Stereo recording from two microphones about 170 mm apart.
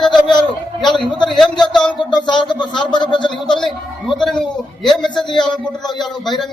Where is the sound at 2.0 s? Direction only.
30° left (ahead or behind).